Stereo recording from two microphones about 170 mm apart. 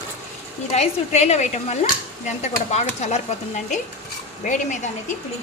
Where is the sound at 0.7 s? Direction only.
40° left (ahead or behind).